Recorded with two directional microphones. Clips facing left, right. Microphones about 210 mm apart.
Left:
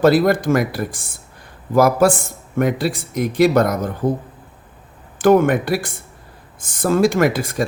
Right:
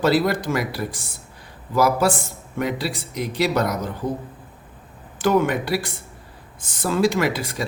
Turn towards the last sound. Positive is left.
turn(degrees=50)  # may be behind; listen again after turning